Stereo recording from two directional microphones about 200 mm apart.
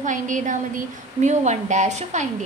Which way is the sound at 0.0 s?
40° right (ahead or behind).